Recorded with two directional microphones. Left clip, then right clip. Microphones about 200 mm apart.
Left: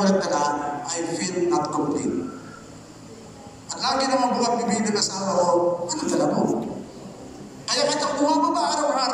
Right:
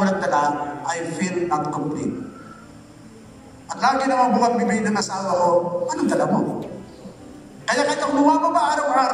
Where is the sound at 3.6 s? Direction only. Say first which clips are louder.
Right 4 dB; 60° right (ahead or behind).